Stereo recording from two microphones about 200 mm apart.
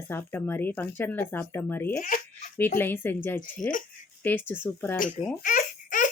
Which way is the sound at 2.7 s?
10° left (ahead or behind).